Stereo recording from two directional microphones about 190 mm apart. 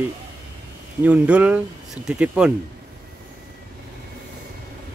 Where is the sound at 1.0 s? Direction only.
5° right (ahead or behind).